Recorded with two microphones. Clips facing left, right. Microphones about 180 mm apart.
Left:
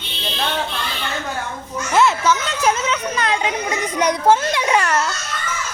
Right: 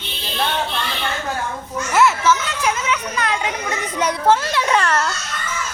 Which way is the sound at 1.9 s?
20° left (ahead or behind).